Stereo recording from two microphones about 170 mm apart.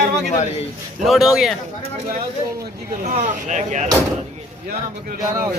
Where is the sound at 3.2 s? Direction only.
45° right (ahead or behind).